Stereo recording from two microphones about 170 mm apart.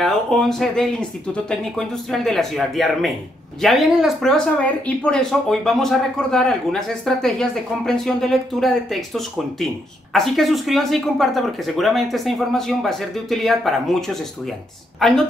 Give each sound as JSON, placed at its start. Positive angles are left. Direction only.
{"t": 0.0, "sound": "speech", "side_deg": 0}